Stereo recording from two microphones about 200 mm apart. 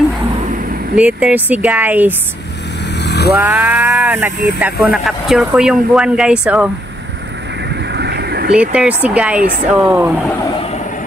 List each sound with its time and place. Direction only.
0.9 s speech: 5° right (ahead or behind)
3.0 s motorcycle: 55° left (ahead or behind)
3.3 s speech: 10° right (ahead or behind)
7.9 s vehicle: 55° right (ahead or behind)
8.5 s speech: 5° right (ahead or behind)